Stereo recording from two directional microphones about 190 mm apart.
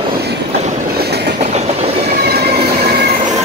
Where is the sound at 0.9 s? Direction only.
60° right (ahead or behind).